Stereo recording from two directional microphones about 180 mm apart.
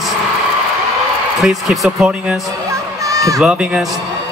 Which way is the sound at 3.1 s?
20° right (ahead or behind).